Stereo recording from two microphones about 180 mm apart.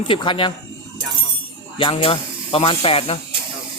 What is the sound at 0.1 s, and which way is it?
Speech, 30° left (ahead or behind).